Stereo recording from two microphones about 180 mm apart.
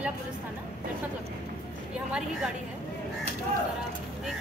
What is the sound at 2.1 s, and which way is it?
Speech, centre (ahead or behind).